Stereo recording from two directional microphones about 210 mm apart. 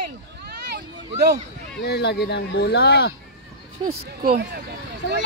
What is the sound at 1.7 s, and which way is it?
Speech, 50° left (ahead or behind).